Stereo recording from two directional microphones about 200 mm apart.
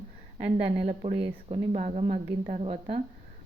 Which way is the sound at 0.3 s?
35° right (ahead or behind).